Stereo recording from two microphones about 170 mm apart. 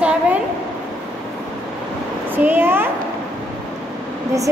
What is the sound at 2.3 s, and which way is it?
Speech, 10° right (ahead or behind).